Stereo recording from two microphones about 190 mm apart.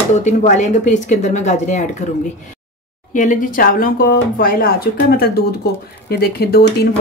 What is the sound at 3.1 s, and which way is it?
Speech, 45° left (ahead or behind).